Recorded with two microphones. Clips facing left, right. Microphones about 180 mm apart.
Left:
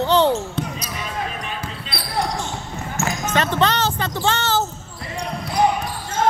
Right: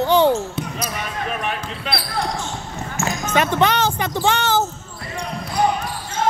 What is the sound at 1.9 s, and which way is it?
Basketball bounce, 90° right.